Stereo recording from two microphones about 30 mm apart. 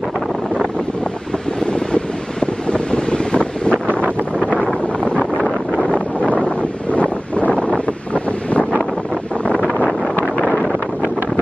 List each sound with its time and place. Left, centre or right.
1.7 s wind noise: left
3.8 s wind noise: left
5.8 s wind noise: left